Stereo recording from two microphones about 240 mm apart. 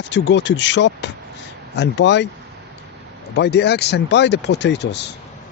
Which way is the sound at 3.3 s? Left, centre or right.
Left.